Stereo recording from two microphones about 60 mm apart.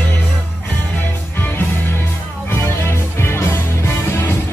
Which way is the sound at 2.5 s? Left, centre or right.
Left.